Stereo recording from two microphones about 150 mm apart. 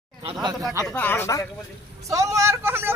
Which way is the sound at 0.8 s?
10° left (ahead or behind).